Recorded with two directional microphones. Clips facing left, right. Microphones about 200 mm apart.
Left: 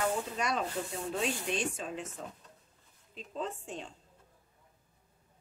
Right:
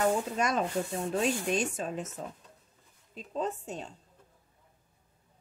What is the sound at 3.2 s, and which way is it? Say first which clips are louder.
Speech: right 5 dB; 40° right (ahead or behind).